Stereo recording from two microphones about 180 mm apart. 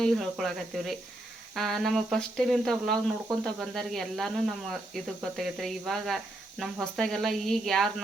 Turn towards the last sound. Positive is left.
turn(degrees=0)  # may be behind; listen again after turning